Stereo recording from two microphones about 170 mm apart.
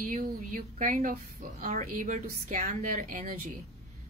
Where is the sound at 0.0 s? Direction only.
50° right (ahead or behind).